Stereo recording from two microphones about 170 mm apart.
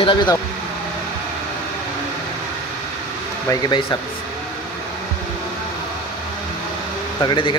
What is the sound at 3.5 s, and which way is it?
Speech, 25° left (ahead or behind).